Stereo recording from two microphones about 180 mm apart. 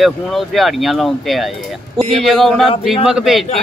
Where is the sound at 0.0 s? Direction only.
Centre (ahead or behind).